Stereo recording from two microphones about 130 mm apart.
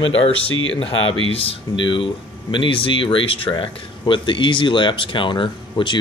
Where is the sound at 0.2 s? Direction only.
45° left (ahead or behind).